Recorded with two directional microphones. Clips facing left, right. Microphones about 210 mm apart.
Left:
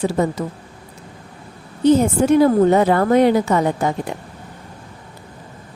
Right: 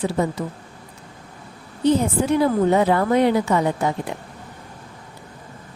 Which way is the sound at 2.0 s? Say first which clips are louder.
Left 5 dB; 45° left (ahead or behind).